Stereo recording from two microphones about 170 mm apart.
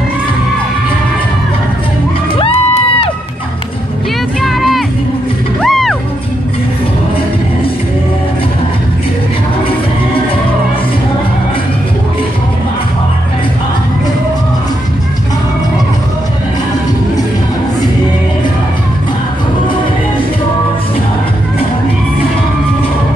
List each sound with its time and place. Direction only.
2.3 s music: 35° left (ahead or behind)
4.4 s music: centre (ahead or behind)